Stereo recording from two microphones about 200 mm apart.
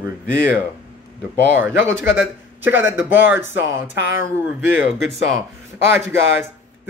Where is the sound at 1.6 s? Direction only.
10° right (ahead or behind).